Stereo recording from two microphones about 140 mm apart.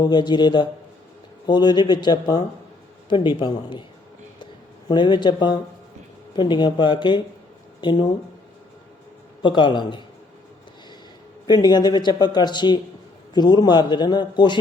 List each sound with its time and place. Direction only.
0.0 s a man's voice: 30° left (ahead or behind)
4.9 s a man's voice: 35° left (ahead or behind)
9.4 s a man's voice: 35° left (ahead or behind)
11.4 s a man's voice: 30° left (ahead or behind)